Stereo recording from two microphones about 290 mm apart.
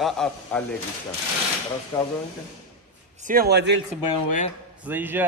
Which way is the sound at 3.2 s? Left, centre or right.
Right.